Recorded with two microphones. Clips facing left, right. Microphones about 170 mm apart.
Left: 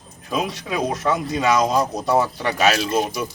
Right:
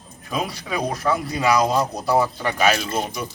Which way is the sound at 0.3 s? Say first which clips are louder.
Left 2 dB; centre (ahead or behind).